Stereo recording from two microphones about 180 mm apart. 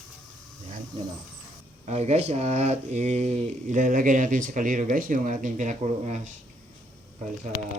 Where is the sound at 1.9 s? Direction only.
35° right (ahead or behind).